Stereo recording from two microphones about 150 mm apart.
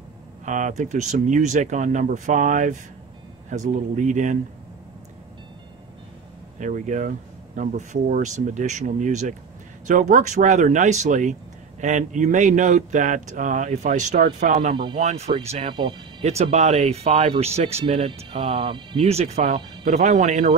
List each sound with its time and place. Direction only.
0.5 s speech: 55° right (ahead or behind)
6.6 s speech: 55° right (ahead or behind)